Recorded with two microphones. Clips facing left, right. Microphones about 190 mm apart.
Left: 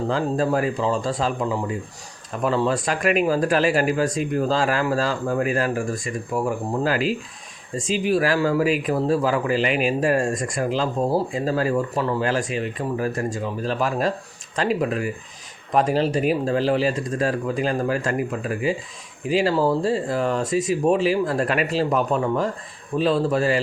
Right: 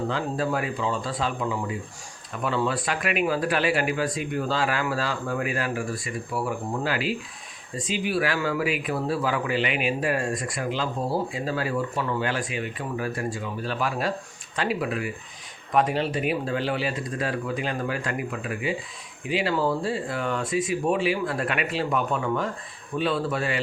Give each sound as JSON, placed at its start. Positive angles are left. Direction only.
{"t": 0.1, "sound": "speech", "side_deg": 40}